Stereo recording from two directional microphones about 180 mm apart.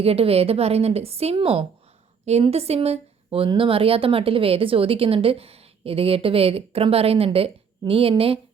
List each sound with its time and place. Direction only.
0.0 s speech: 35° right (ahead or behind)